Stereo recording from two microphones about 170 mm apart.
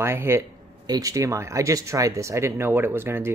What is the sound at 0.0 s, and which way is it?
Speech, 15° right (ahead or behind).